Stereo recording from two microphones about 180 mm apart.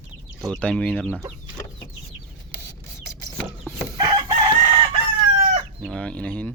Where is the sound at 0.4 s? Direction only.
Centre (ahead or behind).